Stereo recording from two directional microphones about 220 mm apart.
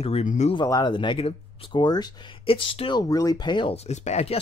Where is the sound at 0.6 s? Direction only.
20° left (ahead or behind).